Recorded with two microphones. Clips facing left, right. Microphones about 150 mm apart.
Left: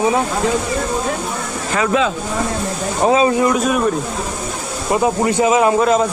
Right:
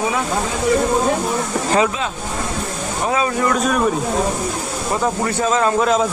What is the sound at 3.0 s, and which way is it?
Speech, 25° left (ahead or behind).